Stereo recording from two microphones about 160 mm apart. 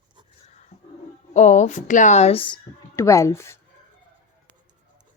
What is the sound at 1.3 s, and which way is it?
A woman's voice, 45° left (ahead or behind).